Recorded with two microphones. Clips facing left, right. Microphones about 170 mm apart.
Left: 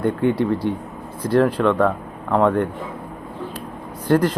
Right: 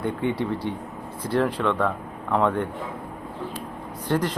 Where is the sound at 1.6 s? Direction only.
55° left (ahead or behind).